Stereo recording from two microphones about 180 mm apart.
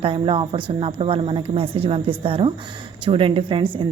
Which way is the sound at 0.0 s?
30° right (ahead or behind).